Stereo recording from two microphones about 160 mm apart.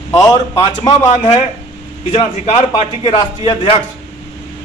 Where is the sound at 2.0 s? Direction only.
40° left (ahead or behind).